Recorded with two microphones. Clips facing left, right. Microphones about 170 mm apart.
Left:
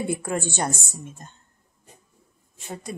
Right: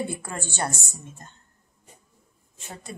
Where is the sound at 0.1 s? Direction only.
15° left (ahead or behind).